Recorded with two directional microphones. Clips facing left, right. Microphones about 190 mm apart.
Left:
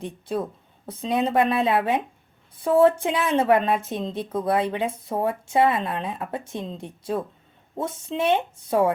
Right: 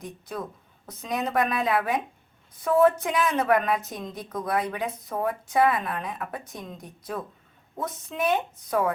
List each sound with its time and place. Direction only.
0.0 s speech: 30° left (ahead or behind)